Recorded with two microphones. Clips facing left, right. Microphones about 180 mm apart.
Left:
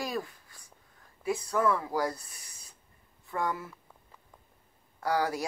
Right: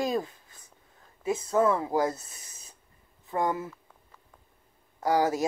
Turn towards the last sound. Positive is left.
turn(degrees=-20)  # may be behind; listen again after turning